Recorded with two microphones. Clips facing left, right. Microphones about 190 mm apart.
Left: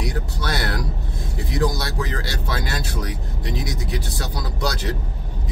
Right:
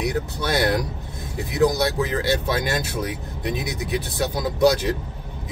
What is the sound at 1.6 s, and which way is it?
Speech, 15° right (ahead or behind).